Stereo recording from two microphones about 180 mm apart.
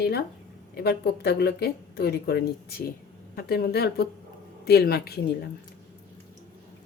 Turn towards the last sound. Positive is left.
turn(degrees=60)  # may be behind; listen again after turning